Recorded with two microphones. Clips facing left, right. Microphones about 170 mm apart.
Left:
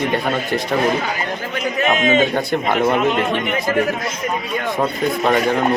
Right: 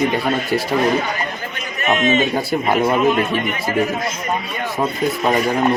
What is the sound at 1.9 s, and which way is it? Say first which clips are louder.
Speech: right 2 dB; 90° left.